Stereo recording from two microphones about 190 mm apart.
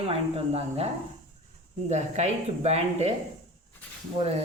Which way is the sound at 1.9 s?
35° right (ahead or behind).